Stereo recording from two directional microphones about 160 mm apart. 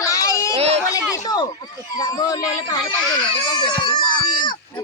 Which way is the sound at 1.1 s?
25° left (ahead or behind).